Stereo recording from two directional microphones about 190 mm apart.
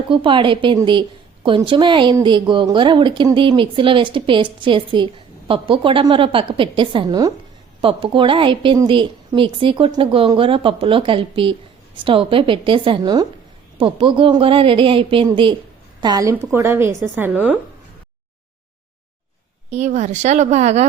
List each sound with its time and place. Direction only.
0.1 s a woman's voice: 25° right (ahead or behind); by 17.6 s 10° right (ahead or behind)
19.7 s speech: 35° right (ahead or behind)